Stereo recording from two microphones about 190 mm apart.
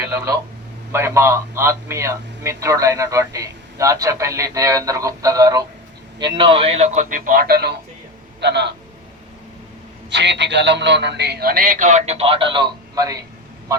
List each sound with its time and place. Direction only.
0.9 s a man's voice: 15° right (ahead or behind); by 8.7 s 60° right (ahead or behind)
10.1 s a man's voice: 65° right (ahead or behind); by 13.2 s 20° right (ahead or behind)